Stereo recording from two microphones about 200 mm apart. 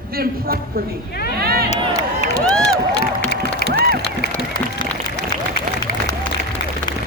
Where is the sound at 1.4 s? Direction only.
50° right (ahead or behind).